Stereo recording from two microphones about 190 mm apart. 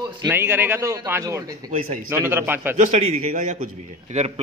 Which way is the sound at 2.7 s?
40° right (ahead or behind).